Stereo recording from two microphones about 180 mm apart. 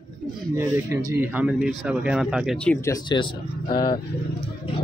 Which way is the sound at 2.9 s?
25° left (ahead or behind).